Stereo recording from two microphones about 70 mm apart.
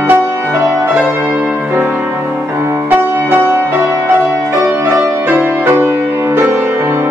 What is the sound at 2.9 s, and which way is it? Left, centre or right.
Music, right.